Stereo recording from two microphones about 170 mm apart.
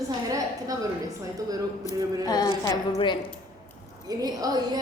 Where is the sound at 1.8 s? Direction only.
25° left (ahead or behind).